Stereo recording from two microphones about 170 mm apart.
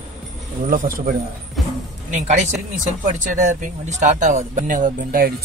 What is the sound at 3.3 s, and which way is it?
Speech, 50° right (ahead or behind).